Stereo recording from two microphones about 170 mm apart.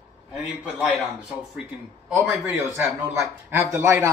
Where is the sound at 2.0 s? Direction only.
10° right (ahead or behind).